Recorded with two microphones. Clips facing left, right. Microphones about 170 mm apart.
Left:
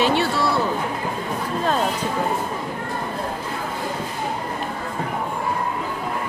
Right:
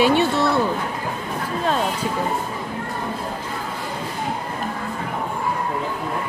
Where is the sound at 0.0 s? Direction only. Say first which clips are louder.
Right 3 dB; 15° right (ahead or behind).